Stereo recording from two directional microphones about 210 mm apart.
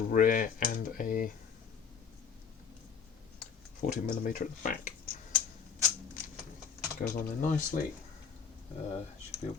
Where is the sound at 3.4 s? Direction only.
35° left (ahead or behind).